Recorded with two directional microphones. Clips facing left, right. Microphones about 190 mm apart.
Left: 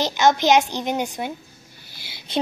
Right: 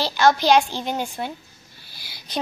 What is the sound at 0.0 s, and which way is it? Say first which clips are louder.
A woman's voice: even; 20° left (ahead or behind).